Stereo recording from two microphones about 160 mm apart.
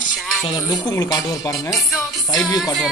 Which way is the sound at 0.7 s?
20° left (ahead or behind).